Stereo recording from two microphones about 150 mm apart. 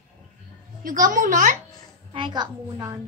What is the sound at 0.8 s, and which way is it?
Speech, 65° right (ahead or behind).